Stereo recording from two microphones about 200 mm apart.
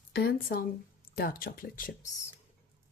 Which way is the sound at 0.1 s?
50° left (ahead or behind).